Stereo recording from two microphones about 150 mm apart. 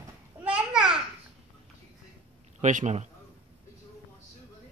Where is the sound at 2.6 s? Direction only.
55° right (ahead or behind).